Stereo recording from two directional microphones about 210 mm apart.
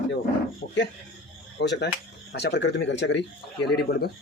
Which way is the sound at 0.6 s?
45° left (ahead or behind).